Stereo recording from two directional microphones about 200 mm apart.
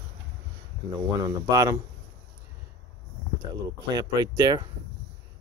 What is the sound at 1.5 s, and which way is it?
Speech, 20° right (ahead or behind).